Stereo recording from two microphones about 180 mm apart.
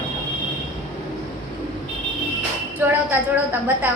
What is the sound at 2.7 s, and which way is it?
A woman's voice, 10° right (ahead or behind).